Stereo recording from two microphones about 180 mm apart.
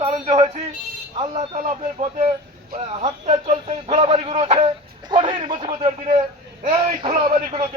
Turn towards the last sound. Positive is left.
turn(degrees=-35)  # may be behind; listen again after turning